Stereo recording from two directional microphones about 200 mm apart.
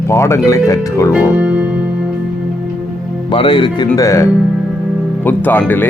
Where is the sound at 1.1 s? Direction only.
5° right (ahead or behind).